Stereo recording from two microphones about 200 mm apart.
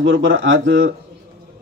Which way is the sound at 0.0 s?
70° right (ahead or behind).